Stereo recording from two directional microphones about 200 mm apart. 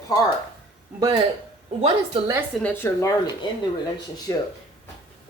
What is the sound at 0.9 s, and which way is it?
Speech, 20° right (ahead or behind).